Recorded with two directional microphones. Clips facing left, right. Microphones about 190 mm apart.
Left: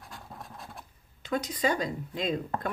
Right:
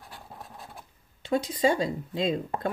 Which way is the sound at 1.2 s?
30° right (ahead or behind).